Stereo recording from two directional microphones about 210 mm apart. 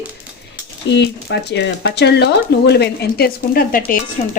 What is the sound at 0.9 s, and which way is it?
Speech, 55° left (ahead or behind).